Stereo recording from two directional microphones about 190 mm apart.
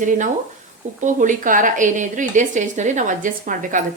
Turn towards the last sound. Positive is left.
turn(degrees=-45)  # may be behind; listen again after turning